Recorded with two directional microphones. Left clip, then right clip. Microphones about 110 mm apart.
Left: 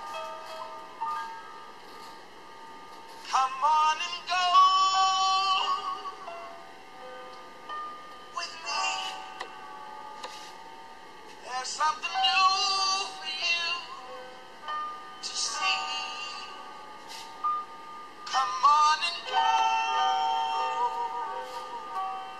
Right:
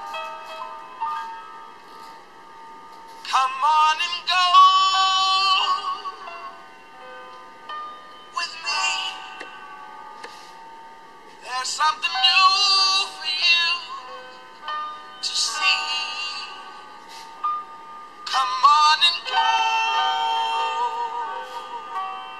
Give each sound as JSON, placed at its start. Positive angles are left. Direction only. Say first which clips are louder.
{"t": 3.3, "sound": "synthetic singing", "louder": "right 5 dB", "side_deg": -30}
{"t": 8.4, "sound": "music", "louder": "right 7 dB", "side_deg": -25}
{"t": 11.4, "sound": "synthetic singing", "louder": "right 7 dB", "side_deg": -25}
{"t": 14.7, "sound": "music", "louder": "right 5 dB", "side_deg": -25}
{"t": 17.4, "sound": "a sound", "louder": "right 4 dB", "side_deg": -30}
{"t": 18.2, "sound": "music", "louder": "right 6 dB", "side_deg": -25}